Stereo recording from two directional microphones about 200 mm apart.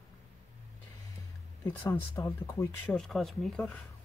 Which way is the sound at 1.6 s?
15° left (ahead or behind).